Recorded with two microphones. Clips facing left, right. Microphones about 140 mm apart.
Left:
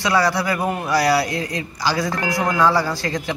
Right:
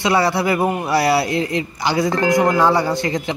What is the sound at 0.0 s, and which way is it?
A man's voice, 25° right (ahead or behind).